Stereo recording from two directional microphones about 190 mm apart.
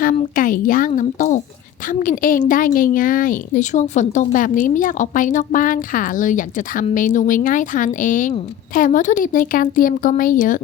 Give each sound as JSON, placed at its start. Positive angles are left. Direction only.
{"t": 0.0, "sound": "a woman's voice", "side_deg": 45}